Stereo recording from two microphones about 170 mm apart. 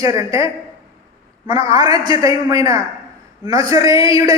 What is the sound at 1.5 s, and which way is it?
A man's voice, 20° right (ahead or behind).